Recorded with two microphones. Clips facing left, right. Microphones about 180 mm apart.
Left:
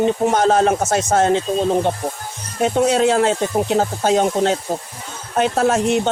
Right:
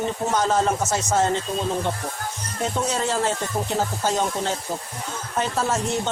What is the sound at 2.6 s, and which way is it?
Speech, 65° left (ahead or behind).